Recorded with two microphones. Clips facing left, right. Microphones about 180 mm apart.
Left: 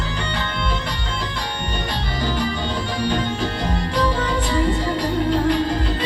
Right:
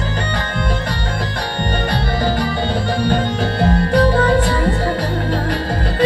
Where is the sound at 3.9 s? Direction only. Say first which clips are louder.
Right 7 dB; 50° right (ahead or behind).